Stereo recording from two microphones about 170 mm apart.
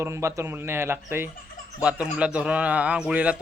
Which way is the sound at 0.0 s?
15° right (ahead or behind).